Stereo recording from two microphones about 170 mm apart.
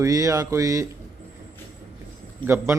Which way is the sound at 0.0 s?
20° right (ahead or behind).